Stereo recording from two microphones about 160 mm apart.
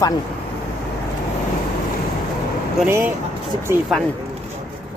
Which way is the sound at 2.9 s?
15° right (ahead or behind).